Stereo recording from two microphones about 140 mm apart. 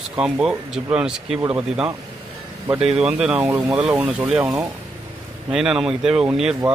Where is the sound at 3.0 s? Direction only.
10° right (ahead or behind).